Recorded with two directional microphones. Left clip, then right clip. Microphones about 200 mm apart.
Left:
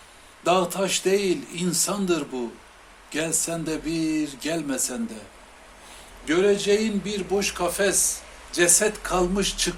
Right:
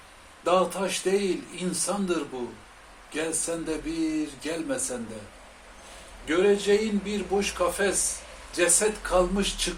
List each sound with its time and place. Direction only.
0.4 s speech: 45° left (ahead or behind)
6.2 s speech: 45° left (ahead or behind)